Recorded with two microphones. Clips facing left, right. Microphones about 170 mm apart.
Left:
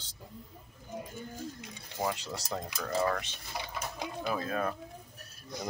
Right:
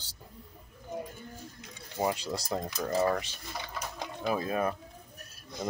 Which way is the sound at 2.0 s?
15° right (ahead or behind).